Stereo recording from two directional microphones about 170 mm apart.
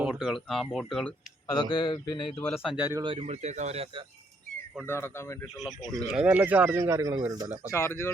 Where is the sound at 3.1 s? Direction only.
40° right (ahead or behind).